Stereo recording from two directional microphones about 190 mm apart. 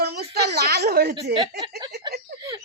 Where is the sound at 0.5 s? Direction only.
60° right (ahead or behind).